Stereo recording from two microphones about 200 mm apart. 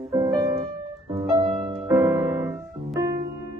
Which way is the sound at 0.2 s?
20° right (ahead or behind).